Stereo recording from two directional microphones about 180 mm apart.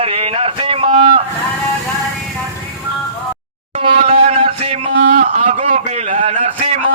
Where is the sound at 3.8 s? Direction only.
30° right (ahead or behind).